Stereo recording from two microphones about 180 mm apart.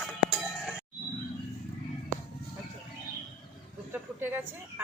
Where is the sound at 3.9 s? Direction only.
10° right (ahead or behind).